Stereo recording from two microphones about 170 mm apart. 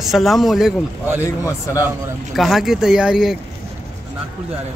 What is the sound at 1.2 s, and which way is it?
Speech, 15° left (ahead or behind).